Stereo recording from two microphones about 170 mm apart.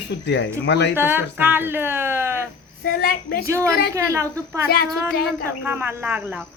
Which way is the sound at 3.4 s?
15° right (ahead or behind).